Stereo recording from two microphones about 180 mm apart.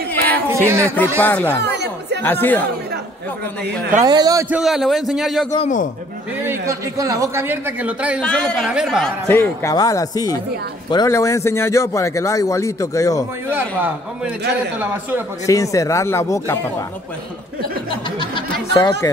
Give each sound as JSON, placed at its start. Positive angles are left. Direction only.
{"t": 0.1, "sound": "a sound", "side_deg": 10}
{"t": 0.7, "sound": "speech", "side_deg": -15}
{"t": 1.2, "sound": "speech", "side_deg": 10}
{"t": 1.6, "sound": "chatter", "side_deg": -70}
{"t": 2.2, "sound": "speech", "side_deg": 10}
{"t": 4.0, "sound": "a man's voice", "side_deg": -20}
{"t": 4.5, "sound": "a man's voice", "side_deg": -5}
{"t": 5.6, "sound": "a man's voice", "side_deg": 45}
{"t": 6.4, "sound": "speech", "side_deg": -15}
{"t": 8.3, "sound": "a man's voice", "side_deg": 5}
{"t": 9.3, "sound": "speech", "side_deg": 15}
{"t": 13.5, "sound": "speech", "side_deg": -10}
{"t": 15.4, "sound": "speech", "side_deg": 20}
{"t": 18.3, "sound": "a sound", "side_deg": 20}